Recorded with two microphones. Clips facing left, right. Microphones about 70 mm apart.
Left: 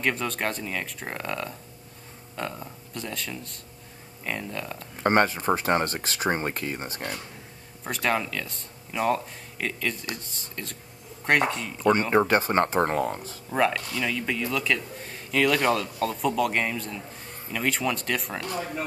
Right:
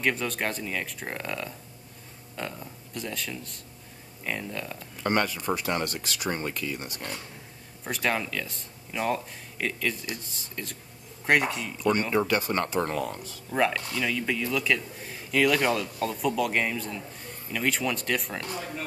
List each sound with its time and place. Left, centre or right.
0.0 s a man's voice: centre
2.6 s a man's voice: centre
4.9 s speech: left
7.9 s a man's voice: centre
12.1 s speech: left
13.6 s a man's voice: centre